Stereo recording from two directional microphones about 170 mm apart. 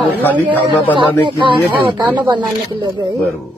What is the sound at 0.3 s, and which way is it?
Speech, 10° left (ahead or behind).